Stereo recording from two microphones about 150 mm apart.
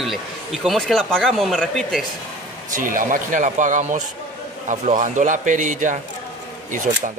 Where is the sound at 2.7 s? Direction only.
65° right (ahead or behind).